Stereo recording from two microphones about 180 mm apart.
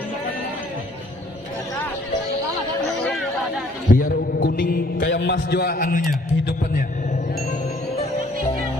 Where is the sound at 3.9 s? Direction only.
50° left (ahead or behind).